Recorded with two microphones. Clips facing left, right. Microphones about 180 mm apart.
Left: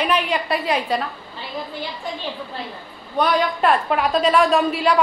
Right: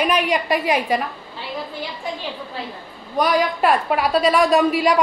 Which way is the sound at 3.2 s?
5° right (ahead or behind).